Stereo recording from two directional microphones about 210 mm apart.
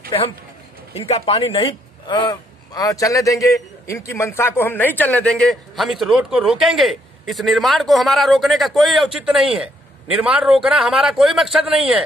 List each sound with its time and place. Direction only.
0.9 s a man's voice: 30° left (ahead or behind); by 12.0 s 5° right (ahead or behind)